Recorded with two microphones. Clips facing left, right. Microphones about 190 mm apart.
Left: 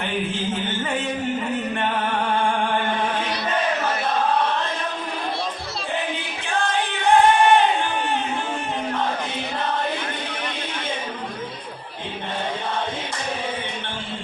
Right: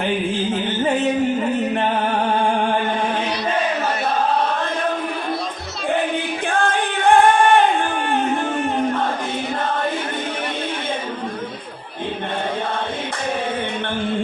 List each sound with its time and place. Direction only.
6.5 s music: 50° right (ahead or behind)